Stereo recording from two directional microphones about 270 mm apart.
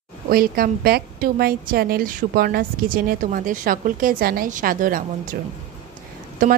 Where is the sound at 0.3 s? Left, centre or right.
Right.